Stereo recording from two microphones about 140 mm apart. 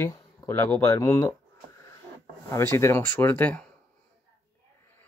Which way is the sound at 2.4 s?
20° left (ahead or behind).